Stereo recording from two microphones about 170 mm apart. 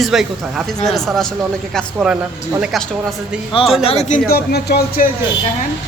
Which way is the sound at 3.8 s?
40° left (ahead or behind).